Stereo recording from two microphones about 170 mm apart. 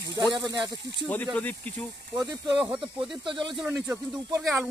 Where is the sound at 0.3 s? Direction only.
25° right (ahead or behind).